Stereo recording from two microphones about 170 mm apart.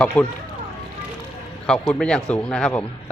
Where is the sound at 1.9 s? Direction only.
5° left (ahead or behind).